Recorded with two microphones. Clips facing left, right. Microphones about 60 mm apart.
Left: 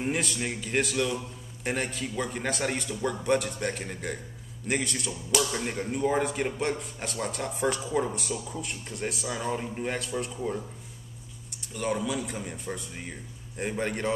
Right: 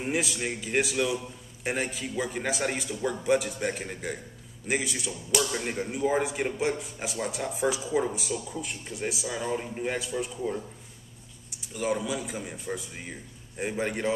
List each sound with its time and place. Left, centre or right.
0.0 s a man's voice: centre
11.6 s a man's voice: centre